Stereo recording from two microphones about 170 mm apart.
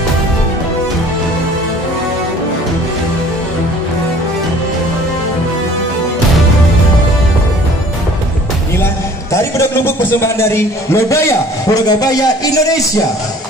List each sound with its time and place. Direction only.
9.3 s a man's voice: 15° left (ahead or behind)